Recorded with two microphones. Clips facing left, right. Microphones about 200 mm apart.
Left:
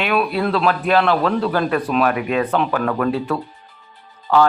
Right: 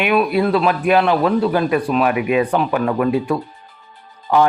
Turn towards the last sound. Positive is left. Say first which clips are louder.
# even
turn(degrees=-15)  # may be behind; listen again after turning